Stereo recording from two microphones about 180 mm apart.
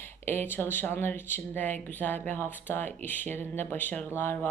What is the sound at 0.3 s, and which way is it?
Speech, 10° left (ahead or behind).